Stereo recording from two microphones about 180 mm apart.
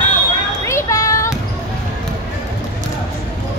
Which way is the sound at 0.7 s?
15° left (ahead or behind).